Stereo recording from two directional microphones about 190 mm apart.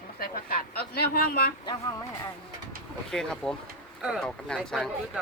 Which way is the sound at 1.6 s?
20° left (ahead or behind).